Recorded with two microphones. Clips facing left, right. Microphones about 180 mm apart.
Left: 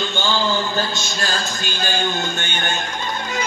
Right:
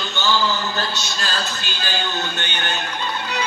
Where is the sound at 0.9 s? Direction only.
45° left (ahead or behind).